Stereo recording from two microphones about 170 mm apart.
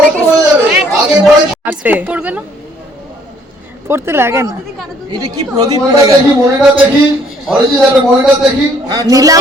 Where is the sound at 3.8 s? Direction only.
15° right (ahead or behind).